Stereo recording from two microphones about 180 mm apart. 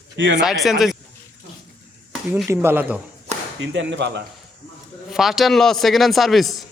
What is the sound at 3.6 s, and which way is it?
Speech, 85° right.